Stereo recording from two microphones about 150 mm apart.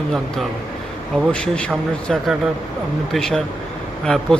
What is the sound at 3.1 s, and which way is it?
Speech, centre (ahead or behind).